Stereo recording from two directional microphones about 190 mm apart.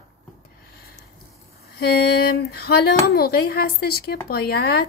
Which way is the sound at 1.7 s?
55° left (ahead or behind).